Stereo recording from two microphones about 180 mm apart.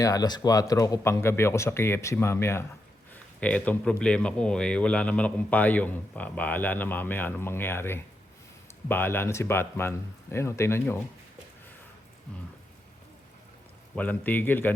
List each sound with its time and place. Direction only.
0.0 s a man's voice: 20° left (ahead or behind)
13.9 s a man's voice: 10° left (ahead or behind)